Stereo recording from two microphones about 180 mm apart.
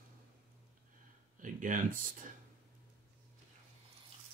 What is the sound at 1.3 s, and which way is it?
Speech, 45° right (ahead or behind).